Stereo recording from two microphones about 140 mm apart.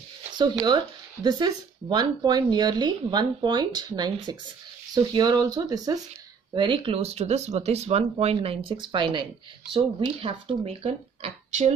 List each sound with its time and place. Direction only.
0.3 s speech: 30° right (ahead or behind); by 11.7 s 50° right (ahead or behind)